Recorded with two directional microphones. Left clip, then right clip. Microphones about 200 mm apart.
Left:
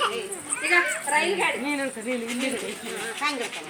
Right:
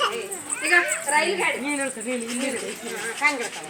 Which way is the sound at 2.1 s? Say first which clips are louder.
Even; 15° left (ahead or behind).